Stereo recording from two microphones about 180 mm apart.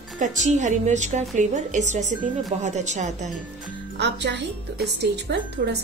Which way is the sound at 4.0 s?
70° right (ahead or behind).